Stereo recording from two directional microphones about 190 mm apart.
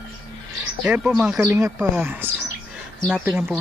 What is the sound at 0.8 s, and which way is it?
Speech, 5° right (ahead or behind).